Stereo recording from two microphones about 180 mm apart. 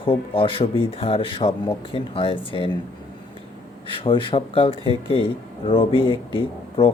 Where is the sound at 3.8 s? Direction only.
30° left (ahead or behind).